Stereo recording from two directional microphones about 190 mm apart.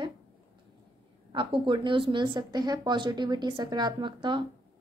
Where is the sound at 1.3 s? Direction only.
25° right (ahead or behind).